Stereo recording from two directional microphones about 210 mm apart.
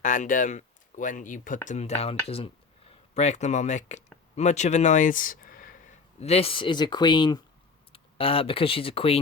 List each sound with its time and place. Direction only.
0.0 s speech: 40° left (ahead or behind)